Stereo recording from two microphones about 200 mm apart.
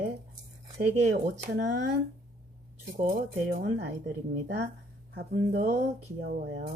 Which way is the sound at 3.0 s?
45° right (ahead or behind).